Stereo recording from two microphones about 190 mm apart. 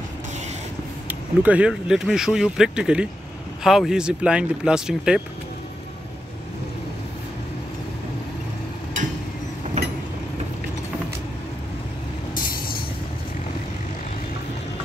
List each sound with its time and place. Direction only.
1.0 s speech: 10° right (ahead or behind)
9.8 s vehicle: 40° right (ahead or behind)